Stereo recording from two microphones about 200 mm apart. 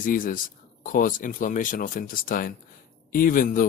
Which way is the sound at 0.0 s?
45° left (ahead or behind).